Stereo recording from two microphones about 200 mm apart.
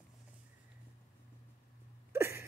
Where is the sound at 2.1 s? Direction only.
10° right (ahead or behind).